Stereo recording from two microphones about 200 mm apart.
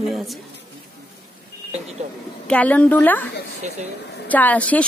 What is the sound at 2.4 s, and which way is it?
Speech, 5° left (ahead or behind).